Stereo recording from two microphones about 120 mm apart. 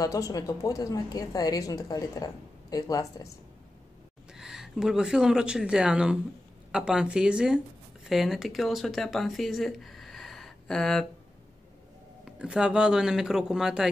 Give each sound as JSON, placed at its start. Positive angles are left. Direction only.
{"t": 0.0, "sound": "a woman's voice", "side_deg": 30}
{"t": 4.3, "sound": "speech", "side_deg": -5}
{"t": 12.3, "sound": "speech", "side_deg": -5}